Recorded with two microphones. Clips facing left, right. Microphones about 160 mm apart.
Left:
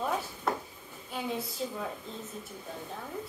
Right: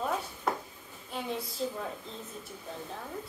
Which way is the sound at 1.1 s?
Centre (ahead or behind).